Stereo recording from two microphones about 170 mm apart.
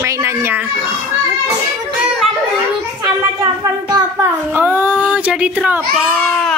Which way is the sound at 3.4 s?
25° right (ahead or behind).